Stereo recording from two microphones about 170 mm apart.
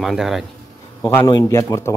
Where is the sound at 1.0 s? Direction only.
15° left (ahead or behind).